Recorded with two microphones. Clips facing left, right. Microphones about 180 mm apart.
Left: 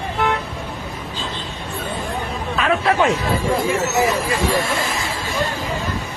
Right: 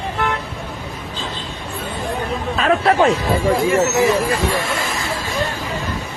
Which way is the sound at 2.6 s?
35° right (ahead or behind).